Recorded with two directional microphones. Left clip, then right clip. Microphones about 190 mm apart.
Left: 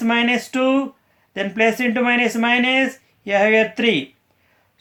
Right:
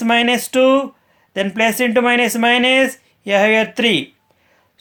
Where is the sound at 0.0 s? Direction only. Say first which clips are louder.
Right 4 dB; 50° right (ahead or behind).